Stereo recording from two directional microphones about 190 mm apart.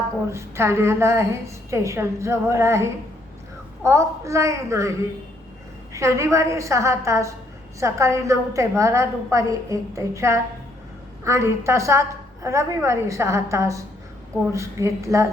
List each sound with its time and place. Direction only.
0.3 s a woman's voice: 15° right (ahead or behind)